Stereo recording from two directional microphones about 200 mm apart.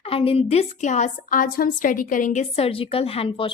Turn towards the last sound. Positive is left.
turn(degrees=30)  # may be behind; listen again after turning